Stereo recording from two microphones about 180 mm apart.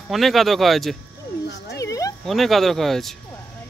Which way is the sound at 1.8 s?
20° left (ahead or behind).